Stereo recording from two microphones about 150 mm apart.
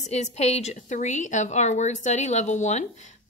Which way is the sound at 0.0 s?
45° left (ahead or behind).